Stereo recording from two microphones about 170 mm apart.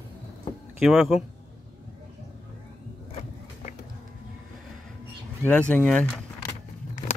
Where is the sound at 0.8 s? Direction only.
Centre (ahead or behind).